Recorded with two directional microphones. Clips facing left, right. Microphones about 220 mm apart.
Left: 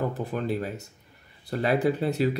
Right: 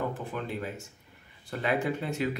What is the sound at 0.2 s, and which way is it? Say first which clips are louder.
Speech: left 6 dB; 35° left (ahead or behind).